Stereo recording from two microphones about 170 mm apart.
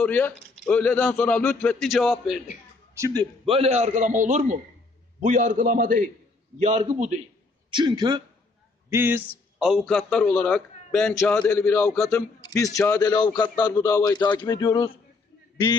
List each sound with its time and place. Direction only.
0.0 s a man's voice: 10° left (ahead or behind)
2.9 s a man's voice: 20° right (ahead or behind); by 6.0 s 55° right (ahead or behind)
6.6 s a man's voice: 40° right (ahead or behind)
7.7 s a man's voice: 25° right (ahead or behind)
8.9 s a man's voice: 10° right (ahead or behind)
9.6 s a man's voice: centre (ahead or behind); by 14.9 s 25° left (ahead or behind)